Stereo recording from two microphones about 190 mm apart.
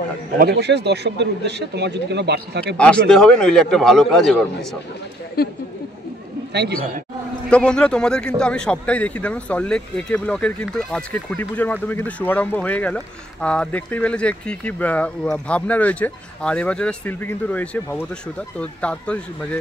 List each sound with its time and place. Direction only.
0.4 s speech: 55° right (ahead or behind)
2.8 s a man's voice: 5° left (ahead or behind)
5.4 s speech: 55° left (ahead or behind)
7.4 s a man's voice: 5° left (ahead or behind)